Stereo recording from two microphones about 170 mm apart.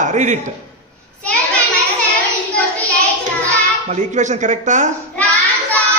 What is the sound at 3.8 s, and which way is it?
A man's voice, 45° right (ahead or behind).